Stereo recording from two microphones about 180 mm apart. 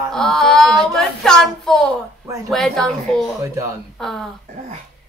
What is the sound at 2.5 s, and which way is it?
Speech, centre (ahead or behind).